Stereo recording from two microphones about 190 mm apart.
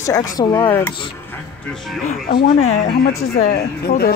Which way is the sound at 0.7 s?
10° left (ahead or behind).